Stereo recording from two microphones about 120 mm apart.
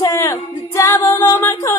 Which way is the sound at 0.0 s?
20° left (ahead or behind).